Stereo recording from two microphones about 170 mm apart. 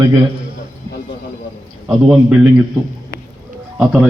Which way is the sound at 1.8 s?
5° right (ahead or behind).